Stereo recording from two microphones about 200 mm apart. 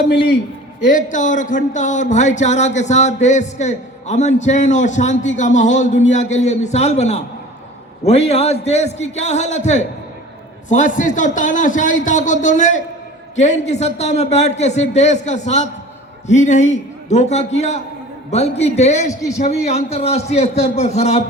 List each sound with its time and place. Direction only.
0.9 s speech: 40° left (ahead or behind)